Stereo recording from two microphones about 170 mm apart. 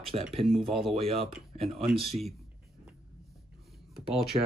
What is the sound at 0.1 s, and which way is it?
Speech, 35° right (ahead or behind).